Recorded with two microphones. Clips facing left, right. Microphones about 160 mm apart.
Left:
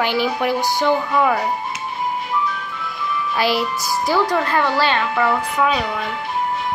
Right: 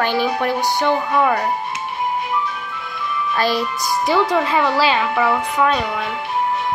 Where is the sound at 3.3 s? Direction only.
10° left (ahead or behind).